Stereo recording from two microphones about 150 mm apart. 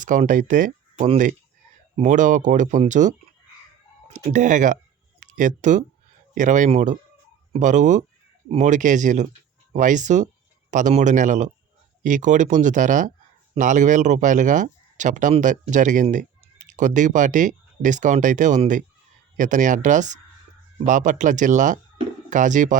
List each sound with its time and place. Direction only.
0.0 s speech: 60° right (ahead or behind)